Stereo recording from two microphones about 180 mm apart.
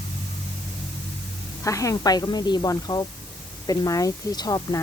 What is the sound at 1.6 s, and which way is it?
Speech, 20° left (ahead or behind).